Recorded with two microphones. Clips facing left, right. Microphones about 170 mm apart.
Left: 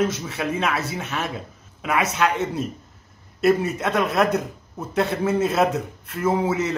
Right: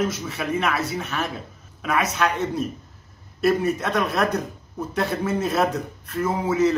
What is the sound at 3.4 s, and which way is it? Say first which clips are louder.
A man's voice: left 1 dB; 25° left (ahead or behind).